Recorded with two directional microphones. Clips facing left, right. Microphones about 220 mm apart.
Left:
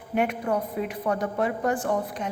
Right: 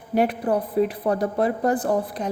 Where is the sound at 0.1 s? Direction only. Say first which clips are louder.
Right 4 dB; 35° right (ahead or behind).